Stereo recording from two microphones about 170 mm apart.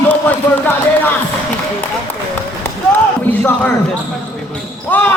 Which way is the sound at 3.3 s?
10° left (ahead or behind).